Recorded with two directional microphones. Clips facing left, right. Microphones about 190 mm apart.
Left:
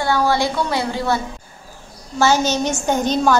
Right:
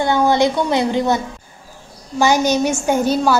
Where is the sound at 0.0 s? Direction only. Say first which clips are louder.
Right 3 dB; 20° right (ahead or behind).